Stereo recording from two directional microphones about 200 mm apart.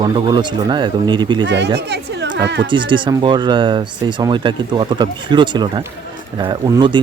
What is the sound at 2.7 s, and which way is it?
Speech, 25° right (ahead or behind).